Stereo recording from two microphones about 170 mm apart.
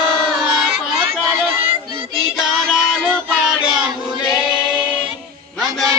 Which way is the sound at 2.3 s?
5° right (ahead or behind).